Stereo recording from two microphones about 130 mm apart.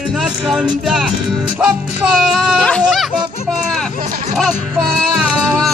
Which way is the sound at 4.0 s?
65° right (ahead or behind).